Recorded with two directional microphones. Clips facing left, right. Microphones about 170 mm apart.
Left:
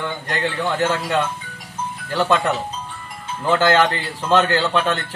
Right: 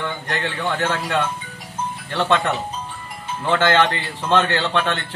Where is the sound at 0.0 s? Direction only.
10° left (ahead or behind).